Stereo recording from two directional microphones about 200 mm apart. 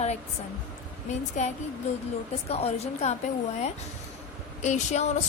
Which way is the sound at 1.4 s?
40° left (ahead or behind).